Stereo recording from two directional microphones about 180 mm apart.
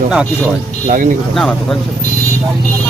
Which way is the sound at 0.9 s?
45° right (ahead or behind).